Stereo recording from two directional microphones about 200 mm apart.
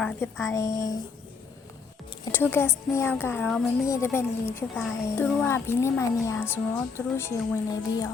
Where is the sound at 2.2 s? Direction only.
10° left (ahead or behind).